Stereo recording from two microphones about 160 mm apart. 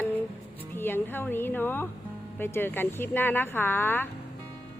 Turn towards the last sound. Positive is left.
turn(degrees=15)  # may be behind; listen again after turning